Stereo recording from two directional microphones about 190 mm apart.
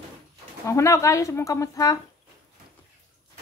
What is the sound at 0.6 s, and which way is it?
Speech, 15° left (ahead or behind).